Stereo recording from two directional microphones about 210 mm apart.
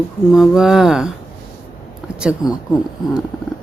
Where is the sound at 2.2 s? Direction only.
5° right (ahead or behind).